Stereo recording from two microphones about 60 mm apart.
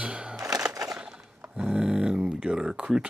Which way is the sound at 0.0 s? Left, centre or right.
Centre.